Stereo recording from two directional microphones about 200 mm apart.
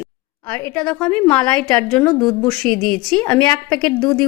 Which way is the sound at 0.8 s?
5° left (ahead or behind).